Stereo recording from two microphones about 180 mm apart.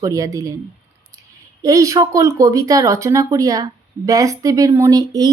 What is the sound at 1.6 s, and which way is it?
Speech, 20° right (ahead or behind).